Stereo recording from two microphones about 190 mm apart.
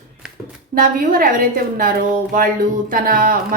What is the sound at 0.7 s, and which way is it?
A woman's voice, 45° right (ahead or behind).